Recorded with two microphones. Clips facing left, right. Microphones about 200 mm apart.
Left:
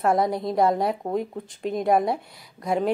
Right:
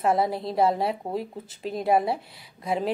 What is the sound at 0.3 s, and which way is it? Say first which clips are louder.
Speech: left 3 dB; 30° right (ahead or behind).